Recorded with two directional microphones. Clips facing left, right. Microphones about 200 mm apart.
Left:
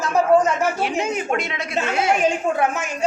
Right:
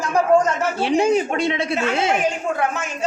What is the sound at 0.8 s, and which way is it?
A woman's voice, 30° right (ahead or behind).